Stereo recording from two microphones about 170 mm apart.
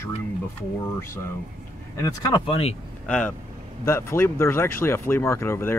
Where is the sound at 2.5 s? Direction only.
35° left (ahead or behind).